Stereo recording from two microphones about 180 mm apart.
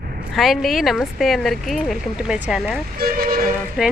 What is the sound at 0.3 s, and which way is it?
Speech, centre (ahead or behind).